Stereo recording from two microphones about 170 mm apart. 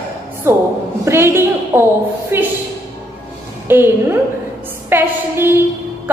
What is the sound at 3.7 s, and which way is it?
A woman's voice, 15° right (ahead or behind).